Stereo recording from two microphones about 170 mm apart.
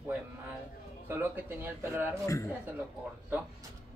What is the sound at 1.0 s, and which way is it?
Speech, 10° right (ahead or behind).